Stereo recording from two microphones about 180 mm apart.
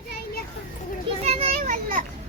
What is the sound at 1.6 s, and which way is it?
Children playing, 50° right (ahead or behind).